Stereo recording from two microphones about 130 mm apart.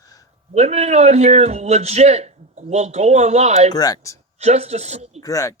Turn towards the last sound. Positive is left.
turn(degrees=25)  # may be behind; listen again after turning